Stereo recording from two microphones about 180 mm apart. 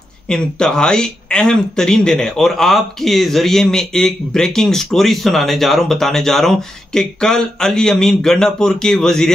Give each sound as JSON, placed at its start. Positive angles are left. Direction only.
{"t": 0.3, "sound": "speech", "side_deg": 5}